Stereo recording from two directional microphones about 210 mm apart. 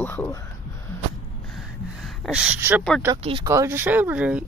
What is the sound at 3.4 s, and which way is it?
Speech, 15° right (ahead or behind).